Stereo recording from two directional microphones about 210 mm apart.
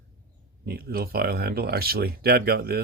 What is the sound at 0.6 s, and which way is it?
Speech, 45° right (ahead or behind).